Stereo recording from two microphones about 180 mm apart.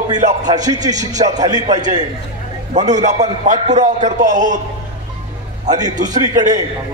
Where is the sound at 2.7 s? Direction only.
40° right (ahead or behind).